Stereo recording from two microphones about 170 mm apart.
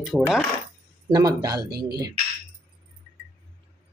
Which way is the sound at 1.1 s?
20° right (ahead or behind).